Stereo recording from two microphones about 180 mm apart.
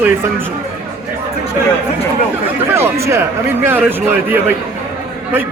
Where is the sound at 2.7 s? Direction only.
15° right (ahead or behind).